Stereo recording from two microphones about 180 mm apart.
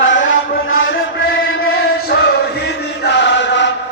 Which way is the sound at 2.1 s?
65° left (ahead or behind).